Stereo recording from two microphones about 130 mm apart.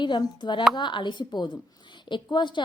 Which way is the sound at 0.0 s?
35° left (ahead or behind).